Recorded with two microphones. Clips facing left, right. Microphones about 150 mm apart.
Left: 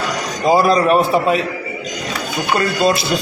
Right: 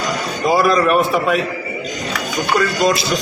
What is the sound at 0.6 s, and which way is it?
Speech, 30° left (ahead or behind).